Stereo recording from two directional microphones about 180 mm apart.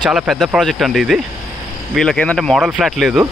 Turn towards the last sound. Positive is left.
turn(degrees=-5)  # may be behind; listen again after turning